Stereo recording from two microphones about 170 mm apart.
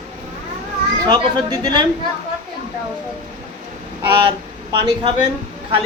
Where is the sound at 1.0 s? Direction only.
25° right (ahead or behind).